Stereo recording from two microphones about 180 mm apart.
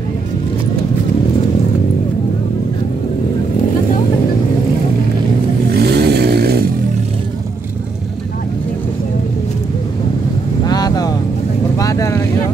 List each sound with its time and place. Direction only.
5.7 s vehicle: 65° right (ahead or behind)
10.6 s vehicle: 20° left (ahead or behind)